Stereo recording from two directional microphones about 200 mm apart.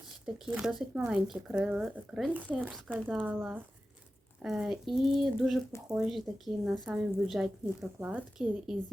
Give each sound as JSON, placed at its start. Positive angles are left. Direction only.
{"t": 0.3, "sound": "speech", "side_deg": -5}